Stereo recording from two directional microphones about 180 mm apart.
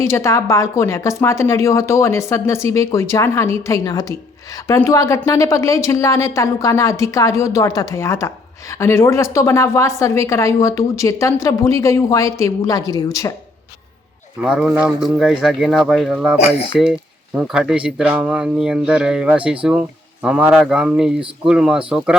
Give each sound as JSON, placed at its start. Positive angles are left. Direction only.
{"t": 0.0, "sound": "a woman's voice", "side_deg": 15}
{"t": 14.4, "sound": "speech", "side_deg": -5}